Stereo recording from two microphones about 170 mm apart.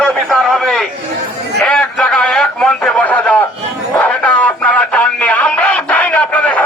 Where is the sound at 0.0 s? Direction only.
Centre (ahead or behind).